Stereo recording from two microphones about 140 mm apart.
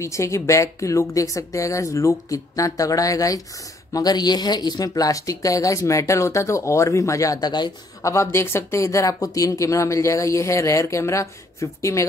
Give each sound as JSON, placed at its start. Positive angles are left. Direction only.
{"t": 0.0, "sound": "speech", "side_deg": 20}
{"t": 8.1, "sound": "speech", "side_deg": 20}